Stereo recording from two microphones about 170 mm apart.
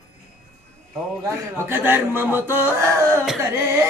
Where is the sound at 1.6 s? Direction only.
10° right (ahead or behind).